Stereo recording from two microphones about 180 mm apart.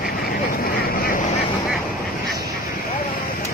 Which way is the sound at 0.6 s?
55° left (ahead or behind).